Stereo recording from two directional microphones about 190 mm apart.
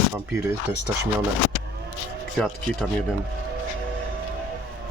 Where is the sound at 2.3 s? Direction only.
Centre (ahead or behind).